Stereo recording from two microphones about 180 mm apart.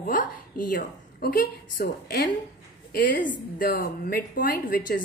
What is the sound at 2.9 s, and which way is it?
A woman's voice, 50° left (ahead or behind).